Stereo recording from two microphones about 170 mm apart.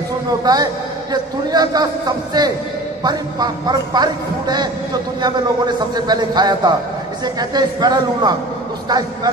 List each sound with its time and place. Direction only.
0.5 s a man's voice: 25° right (ahead or behind)